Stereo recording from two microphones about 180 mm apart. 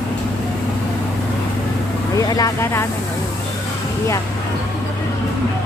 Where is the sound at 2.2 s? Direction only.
20° left (ahead or behind).